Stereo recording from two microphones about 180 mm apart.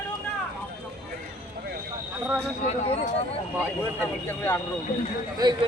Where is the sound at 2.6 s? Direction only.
35° left (ahead or behind).